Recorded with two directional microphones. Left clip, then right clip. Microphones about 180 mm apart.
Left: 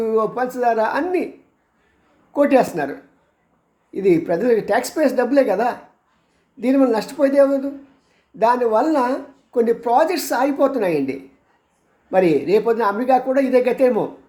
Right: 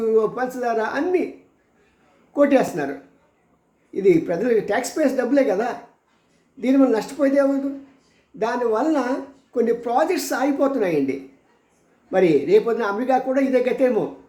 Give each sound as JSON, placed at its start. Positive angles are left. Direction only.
{"t": 0.0, "sound": "speech", "side_deg": 15}
{"t": 2.3, "sound": "speech", "side_deg": 15}
{"t": 3.9, "sound": "speech", "side_deg": 15}